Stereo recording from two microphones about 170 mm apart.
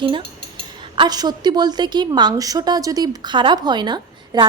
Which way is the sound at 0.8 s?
25° right (ahead or behind).